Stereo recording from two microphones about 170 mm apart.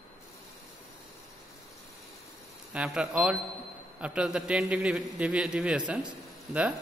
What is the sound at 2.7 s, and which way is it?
A man's voice, 5° right (ahead or behind).